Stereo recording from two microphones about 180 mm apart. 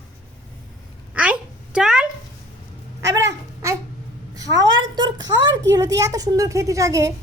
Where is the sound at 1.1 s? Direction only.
5° right (ahead or behind).